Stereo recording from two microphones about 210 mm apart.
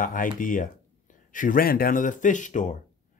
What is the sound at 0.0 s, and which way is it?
Speech, 40° left (ahead or behind).